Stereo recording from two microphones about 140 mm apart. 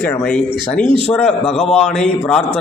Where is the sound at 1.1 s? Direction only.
5° left (ahead or behind).